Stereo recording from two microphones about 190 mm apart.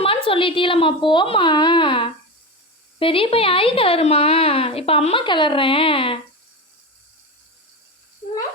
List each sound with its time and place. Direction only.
0.0 s a woman's voice: 30° left (ahead or behind)